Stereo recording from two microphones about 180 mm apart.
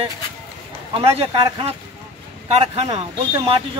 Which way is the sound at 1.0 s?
30° right (ahead or behind).